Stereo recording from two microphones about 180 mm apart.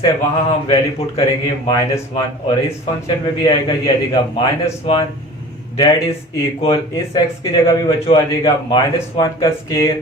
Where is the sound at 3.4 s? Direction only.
25° left (ahead or behind).